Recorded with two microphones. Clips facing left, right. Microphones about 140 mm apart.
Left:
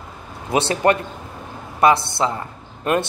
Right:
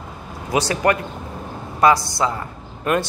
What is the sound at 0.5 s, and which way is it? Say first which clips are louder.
Speech: left 1 dB; 25° left (ahead or behind).